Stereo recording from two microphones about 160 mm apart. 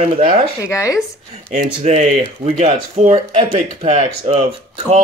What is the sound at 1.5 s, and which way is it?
Speech, 45° right (ahead or behind).